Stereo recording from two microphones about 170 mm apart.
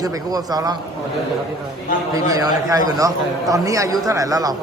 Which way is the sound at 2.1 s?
20° right (ahead or behind).